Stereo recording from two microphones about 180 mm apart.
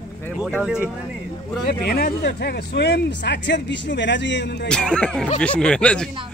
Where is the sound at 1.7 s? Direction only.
60° left (ahead or behind); by 4.6 s 80° left.